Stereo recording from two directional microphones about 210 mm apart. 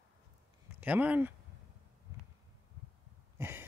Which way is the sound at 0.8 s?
5° right (ahead or behind).